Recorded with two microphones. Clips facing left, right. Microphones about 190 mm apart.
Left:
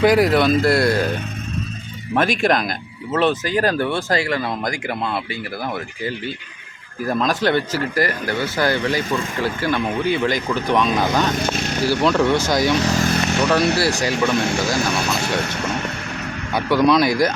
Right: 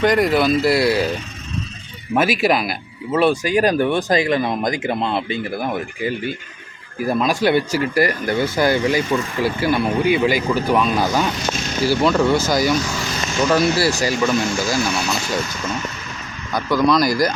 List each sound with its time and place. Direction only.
0.0 s speech: 5° left (ahead or behind)
2.1 s speech: 5° right (ahead or behind)
11.3 s a sound: 60° left (ahead or behind)
11.8 s speech: centre (ahead or behind)
13.0 s vehicle: 60° left (ahead or behind)
13.6 s speech: 65° left (ahead or behind)
14.0 s speech: 5° right (ahead or behind)
15.2 s speech: 65° left (ahead or behind)
16.6 s speech: 5° left (ahead or behind)